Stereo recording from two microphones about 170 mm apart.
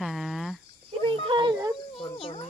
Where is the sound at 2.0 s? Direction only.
30° left (ahead or behind).